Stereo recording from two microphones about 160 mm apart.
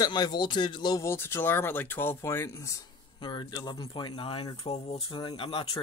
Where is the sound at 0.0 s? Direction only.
25° left (ahead or behind).